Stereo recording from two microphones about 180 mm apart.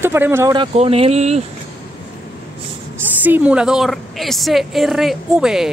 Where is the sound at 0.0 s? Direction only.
10° right (ahead or behind).